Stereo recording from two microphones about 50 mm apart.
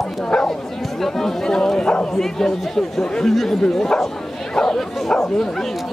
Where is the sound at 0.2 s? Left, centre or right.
Centre.